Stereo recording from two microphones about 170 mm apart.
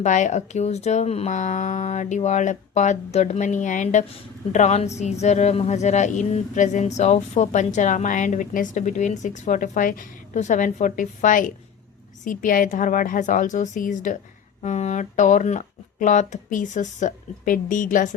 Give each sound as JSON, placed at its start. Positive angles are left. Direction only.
{"t": 0.0, "sound": "a woman's voice", "side_deg": 45}